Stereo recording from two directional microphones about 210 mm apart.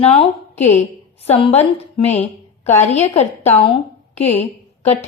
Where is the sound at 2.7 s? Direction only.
35° left (ahead or behind).